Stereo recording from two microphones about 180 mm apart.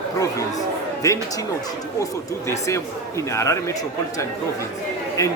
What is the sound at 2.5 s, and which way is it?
A man's voice, 15° left (ahead or behind).